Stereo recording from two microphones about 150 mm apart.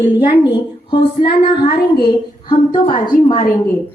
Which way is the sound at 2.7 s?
30° left (ahead or behind).